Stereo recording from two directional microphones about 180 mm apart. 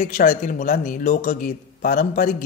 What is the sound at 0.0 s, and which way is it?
Speech, 50° left (ahead or behind).